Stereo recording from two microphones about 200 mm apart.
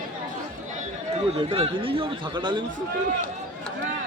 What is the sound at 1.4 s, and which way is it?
Speech, 30° right (ahead or behind).